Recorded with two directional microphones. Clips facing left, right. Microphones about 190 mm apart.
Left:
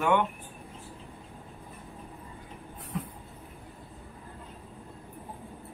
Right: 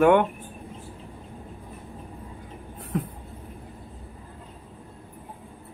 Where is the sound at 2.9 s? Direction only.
50° right (ahead or behind).